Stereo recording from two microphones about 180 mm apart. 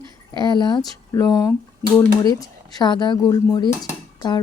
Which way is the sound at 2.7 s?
25° left (ahead or behind).